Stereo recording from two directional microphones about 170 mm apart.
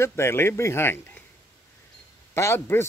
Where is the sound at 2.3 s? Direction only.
15° left (ahead or behind).